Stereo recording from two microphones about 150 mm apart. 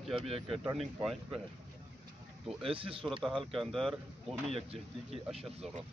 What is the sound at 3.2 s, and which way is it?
Speech, centre (ahead or behind).